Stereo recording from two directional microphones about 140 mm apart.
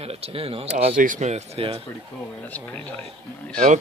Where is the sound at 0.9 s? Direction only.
70° right (ahead or behind); by 1.8 s 45° right (ahead or behind).